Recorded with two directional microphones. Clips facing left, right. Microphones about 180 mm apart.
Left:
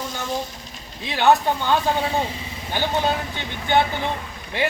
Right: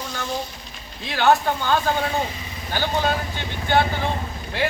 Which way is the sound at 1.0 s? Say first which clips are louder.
Left 1 dB; 15° left (ahead or behind).